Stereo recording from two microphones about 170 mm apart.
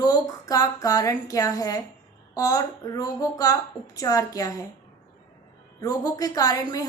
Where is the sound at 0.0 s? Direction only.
20° left (ahead or behind).